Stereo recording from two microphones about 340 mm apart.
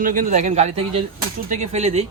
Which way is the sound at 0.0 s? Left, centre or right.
Right.